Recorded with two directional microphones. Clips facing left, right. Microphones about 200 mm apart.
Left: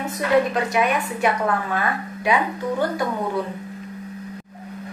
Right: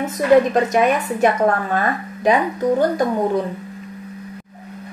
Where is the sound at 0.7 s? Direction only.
45° right (ahead or behind).